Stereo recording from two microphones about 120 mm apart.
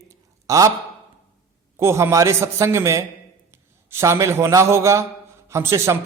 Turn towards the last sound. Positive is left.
turn(degrees=-25)  # may be behind; listen again after turning